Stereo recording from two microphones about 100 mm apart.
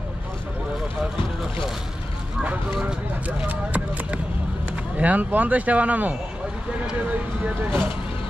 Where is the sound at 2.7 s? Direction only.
10° right (ahead or behind).